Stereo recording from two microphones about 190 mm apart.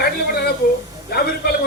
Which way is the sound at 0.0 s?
55° left (ahead or behind).